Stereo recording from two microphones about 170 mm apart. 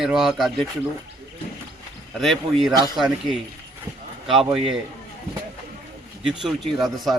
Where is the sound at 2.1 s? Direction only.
Centre (ahead or behind).